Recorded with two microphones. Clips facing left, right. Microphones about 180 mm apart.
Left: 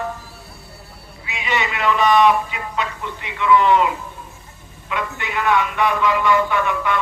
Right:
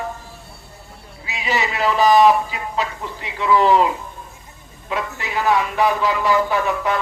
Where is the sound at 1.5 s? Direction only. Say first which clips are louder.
Even; 35° right (ahead or behind).